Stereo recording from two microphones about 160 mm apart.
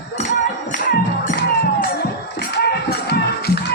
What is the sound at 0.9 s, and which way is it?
Music, 70° left (ahead or behind).